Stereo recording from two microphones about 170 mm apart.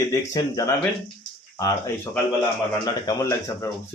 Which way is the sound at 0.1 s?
20° left (ahead or behind).